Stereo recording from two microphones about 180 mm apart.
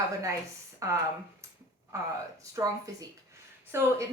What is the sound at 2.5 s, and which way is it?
Speech, 20° right (ahead or behind).